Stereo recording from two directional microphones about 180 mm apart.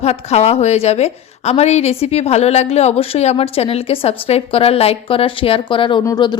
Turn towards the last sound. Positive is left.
turn(degrees=25)  # may be behind; listen again after turning